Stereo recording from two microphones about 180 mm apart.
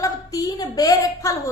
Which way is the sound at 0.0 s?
20° left (ahead or behind).